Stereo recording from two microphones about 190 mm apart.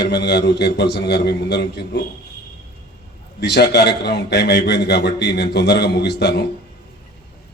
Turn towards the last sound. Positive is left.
turn(degrees=60)  # may be behind; listen again after turning